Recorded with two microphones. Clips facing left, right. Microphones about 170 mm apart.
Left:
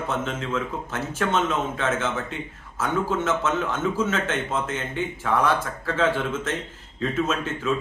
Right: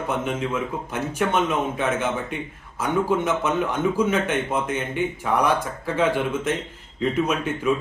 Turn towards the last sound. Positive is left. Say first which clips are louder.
# right 2 dB
turn(degrees=-15)  # may be behind; listen again after turning